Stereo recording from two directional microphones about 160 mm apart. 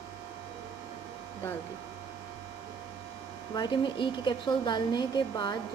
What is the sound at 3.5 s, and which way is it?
A woman's voice, 30° left (ahead or behind).